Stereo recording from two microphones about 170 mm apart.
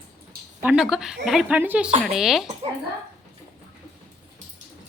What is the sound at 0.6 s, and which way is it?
Speech, 5° right (ahead or behind).